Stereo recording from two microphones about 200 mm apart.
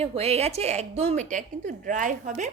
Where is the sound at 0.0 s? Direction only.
30° right (ahead or behind).